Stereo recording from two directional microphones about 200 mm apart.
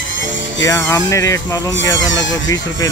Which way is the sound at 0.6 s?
15° left (ahead or behind).